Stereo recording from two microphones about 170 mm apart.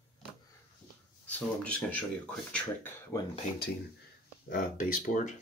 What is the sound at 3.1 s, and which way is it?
Speech, 10° left (ahead or behind).